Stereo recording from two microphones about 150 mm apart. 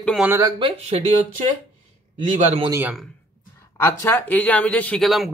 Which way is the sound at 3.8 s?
15° left (ahead or behind).